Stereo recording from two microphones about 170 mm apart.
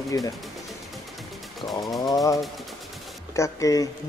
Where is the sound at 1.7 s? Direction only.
20° left (ahead or behind).